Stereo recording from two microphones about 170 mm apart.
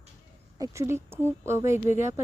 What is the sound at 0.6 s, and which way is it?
Speech, 15° right (ahead or behind).